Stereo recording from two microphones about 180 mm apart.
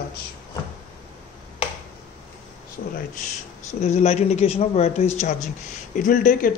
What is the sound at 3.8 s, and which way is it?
A man's voice, 35° left (ahead or behind).